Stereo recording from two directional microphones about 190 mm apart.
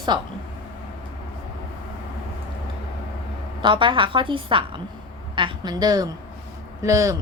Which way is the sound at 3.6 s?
25° right (ahead or behind).